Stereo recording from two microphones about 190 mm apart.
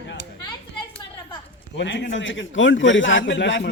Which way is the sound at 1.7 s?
70° left (ahead or behind).